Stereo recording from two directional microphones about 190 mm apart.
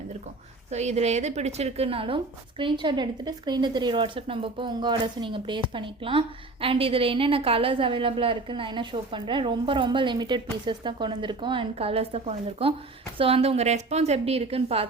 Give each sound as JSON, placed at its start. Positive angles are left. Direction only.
{"t": 0.7, "sound": "a woman's voice", "side_deg": -35}